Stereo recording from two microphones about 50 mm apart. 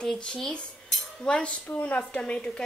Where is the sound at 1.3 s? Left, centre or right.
Left.